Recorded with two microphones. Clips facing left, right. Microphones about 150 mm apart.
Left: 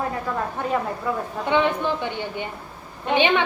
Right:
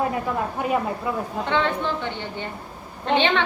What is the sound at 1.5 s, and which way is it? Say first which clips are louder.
A woman's voice: left 3 dB; 15° left (ahead or behind).